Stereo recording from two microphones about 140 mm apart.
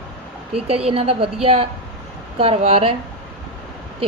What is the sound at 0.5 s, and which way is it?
A woman's voice, 45° right (ahead or behind).